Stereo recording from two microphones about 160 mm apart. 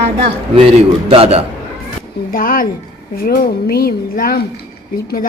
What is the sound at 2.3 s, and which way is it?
A woman's voice, 60° left (ahead or behind).